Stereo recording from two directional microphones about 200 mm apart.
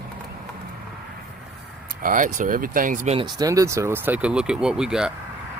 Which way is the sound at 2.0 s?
40° right (ahead or behind).